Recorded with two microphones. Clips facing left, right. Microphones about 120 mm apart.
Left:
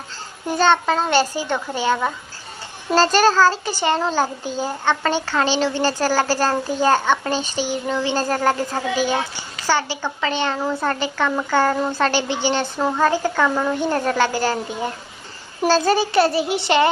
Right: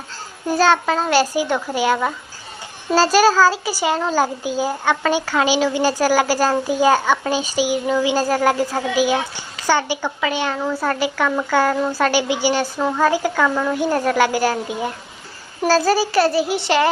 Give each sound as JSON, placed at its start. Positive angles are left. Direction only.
{"t": 0.5, "sound": "a child's voice", "side_deg": -5}
{"t": 12.8, "sound": "a child's voice", "side_deg": 5}
{"t": 13.1, "sound": "a child's voice", "side_deg": -10}
{"t": 13.5, "sound": "a woman's voice", "side_deg": 5}
{"t": 13.7, "sound": "a child's voice", "side_deg": -10}